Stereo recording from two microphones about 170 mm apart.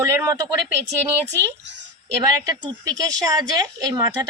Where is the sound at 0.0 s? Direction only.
15° right (ahead or behind).